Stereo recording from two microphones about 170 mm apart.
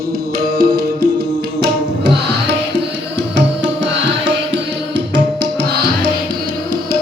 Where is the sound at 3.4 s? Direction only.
90° right.